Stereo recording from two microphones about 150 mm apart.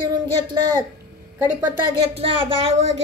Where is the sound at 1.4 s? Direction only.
10° right (ahead or behind).